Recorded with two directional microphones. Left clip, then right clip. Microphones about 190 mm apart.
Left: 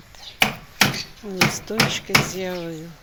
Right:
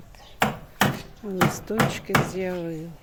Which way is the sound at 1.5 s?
20° right (ahead or behind).